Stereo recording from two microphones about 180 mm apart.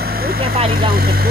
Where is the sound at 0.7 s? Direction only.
55° right (ahead or behind).